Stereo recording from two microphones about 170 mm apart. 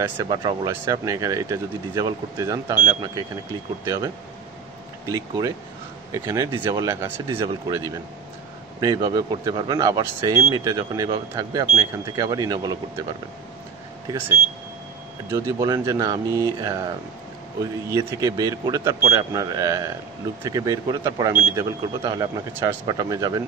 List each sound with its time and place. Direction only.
0.0 s speech: 20° right (ahead or behind)
5.0 s speech: 20° right (ahead or behind)
15.2 s speech: 15° right (ahead or behind)